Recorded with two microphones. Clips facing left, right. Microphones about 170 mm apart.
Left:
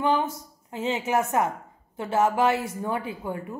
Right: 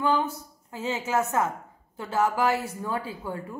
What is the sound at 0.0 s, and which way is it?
A woman's voice, 20° left (ahead or behind).